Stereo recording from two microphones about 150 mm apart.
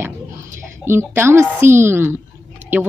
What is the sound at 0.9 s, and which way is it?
Speech, 15° right (ahead or behind).